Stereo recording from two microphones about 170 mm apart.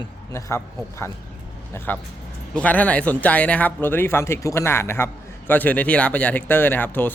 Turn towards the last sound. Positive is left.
turn(degrees=10)  # may be behind; listen again after turning